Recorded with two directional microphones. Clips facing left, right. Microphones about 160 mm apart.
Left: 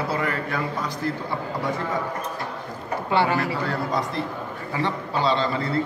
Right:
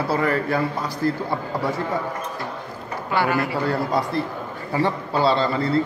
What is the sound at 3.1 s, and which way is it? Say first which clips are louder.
Speech: even; 25° left (ahead or behind).